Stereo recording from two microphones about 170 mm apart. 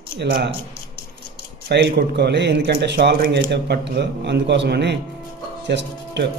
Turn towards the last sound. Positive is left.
turn(degrees=-90)